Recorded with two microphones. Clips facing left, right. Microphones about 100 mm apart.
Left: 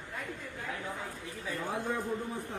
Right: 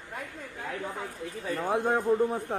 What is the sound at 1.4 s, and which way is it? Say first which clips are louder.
A man's voice: right 7 dB; 50° right (ahead or behind).